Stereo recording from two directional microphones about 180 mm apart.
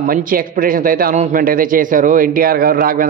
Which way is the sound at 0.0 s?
50° right (ahead or behind).